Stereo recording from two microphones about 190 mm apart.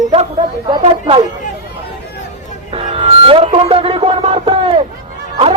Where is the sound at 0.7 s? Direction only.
30° right (ahead or behind).